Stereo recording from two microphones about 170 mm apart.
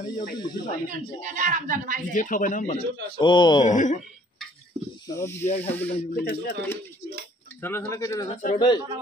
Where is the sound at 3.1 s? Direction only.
25° left (ahead or behind).